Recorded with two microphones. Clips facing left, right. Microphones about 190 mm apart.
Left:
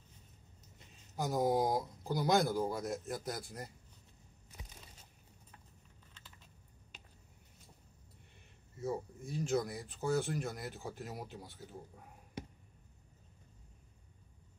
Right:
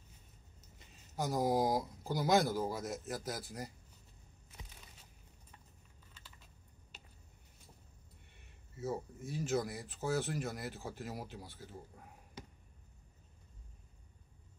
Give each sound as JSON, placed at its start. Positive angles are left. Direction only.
{"t": 0.7, "sound": "speech", "side_deg": 0}
{"t": 8.7, "sound": "speech", "side_deg": -5}